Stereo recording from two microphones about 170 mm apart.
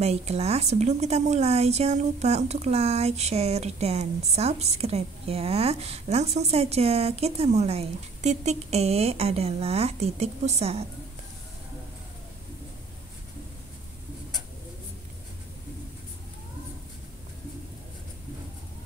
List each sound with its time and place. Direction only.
0.0 s speech: 40° right (ahead or behind)